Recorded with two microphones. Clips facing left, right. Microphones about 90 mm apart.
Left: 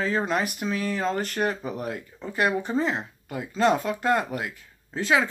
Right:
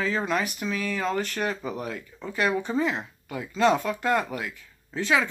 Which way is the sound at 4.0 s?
35° left (ahead or behind).